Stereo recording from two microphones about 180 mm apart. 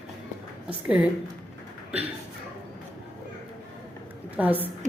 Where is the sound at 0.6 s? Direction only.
5° right (ahead or behind).